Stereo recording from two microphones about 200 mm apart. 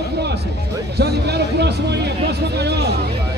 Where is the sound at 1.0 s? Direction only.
55° right (ahead or behind).